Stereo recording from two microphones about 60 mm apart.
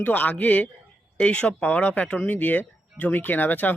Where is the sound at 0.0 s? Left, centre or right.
Left.